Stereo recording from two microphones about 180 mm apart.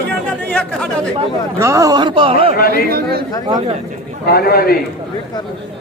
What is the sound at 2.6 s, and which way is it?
Speech, 55° left (ahead or behind).